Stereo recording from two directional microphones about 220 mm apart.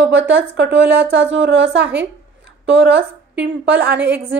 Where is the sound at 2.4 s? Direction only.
55° right (ahead or behind).